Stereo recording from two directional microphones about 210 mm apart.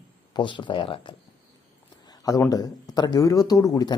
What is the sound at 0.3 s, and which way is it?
Speech, 20° left (ahead or behind).